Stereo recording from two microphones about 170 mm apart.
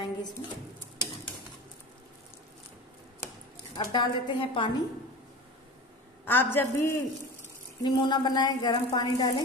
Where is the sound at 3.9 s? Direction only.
30° left (ahead or behind).